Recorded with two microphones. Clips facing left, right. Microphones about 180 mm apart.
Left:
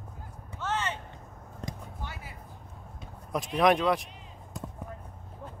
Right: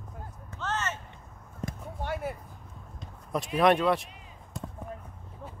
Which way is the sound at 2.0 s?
55° right (ahead or behind).